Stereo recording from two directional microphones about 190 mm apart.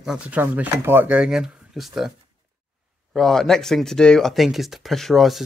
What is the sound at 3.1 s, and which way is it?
Speech, centre (ahead or behind).